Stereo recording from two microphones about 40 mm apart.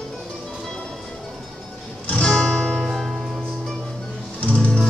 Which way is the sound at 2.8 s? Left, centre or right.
Centre.